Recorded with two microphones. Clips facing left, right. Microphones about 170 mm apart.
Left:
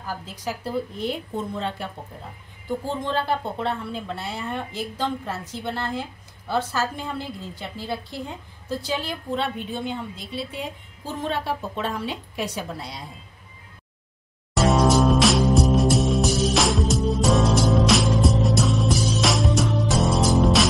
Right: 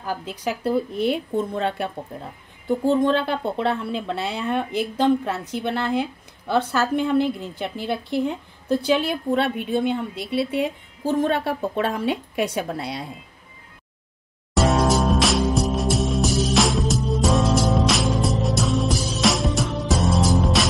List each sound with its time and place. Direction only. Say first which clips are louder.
0.2 s a woman's voice: right 5 dB; 65° right (ahead or behind)
2.8 s a woman's voice: right 9 dB; 60° right (ahead or behind)
14.5 s music: even; centre (ahead or behind)